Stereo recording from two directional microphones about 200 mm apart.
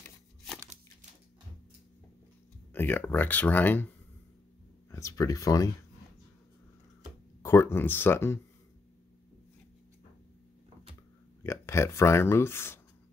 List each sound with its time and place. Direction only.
2.7 s speech: 10° left (ahead or behind)
4.9 s speech: 15° left (ahead or behind)
7.4 s speech: 15° left (ahead or behind)
11.4 s speech: 15° left (ahead or behind)